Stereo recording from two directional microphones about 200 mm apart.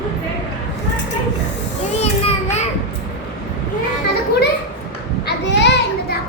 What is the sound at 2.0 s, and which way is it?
Children playing, 35° left (ahead or behind).